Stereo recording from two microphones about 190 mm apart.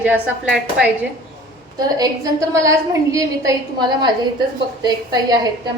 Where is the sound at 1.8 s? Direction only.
20° right (ahead or behind).